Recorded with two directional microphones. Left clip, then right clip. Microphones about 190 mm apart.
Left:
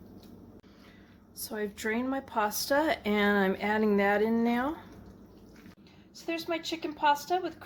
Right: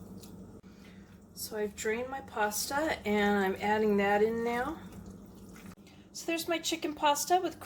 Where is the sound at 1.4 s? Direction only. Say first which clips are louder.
Even; 45° left (ahead or behind).